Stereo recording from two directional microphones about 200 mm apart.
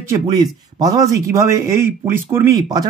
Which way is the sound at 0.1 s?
20° right (ahead or behind).